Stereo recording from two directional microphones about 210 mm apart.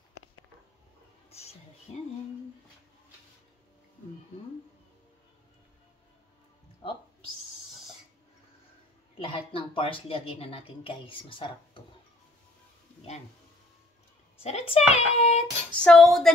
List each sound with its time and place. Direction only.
1.3 s a sound: 30° left (ahead or behind)
9.2 s speech: 25° left (ahead or behind)
14.4 s speech: 30° left (ahead or behind)
15.7 s speech: 5° left (ahead or behind)